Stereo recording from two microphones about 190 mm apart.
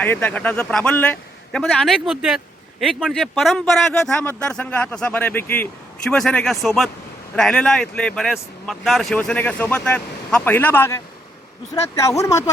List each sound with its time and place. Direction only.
0.0 s speech: 10° left (ahead or behind)